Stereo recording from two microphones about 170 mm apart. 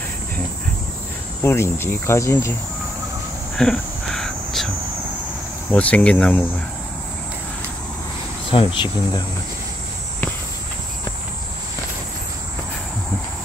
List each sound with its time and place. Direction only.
1.4 s cricket: 15° left (ahead or behind)
3.5 s a sound: 5° left (ahead or behind)
5.7 s cricket: 10° left (ahead or behind)
8.5 s speech: 30° left (ahead or behind)